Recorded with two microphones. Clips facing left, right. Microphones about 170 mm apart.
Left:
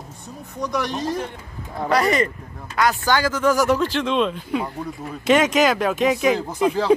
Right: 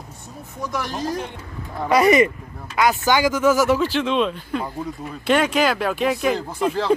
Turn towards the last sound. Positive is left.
turn(degrees=5)  # may be behind; listen again after turning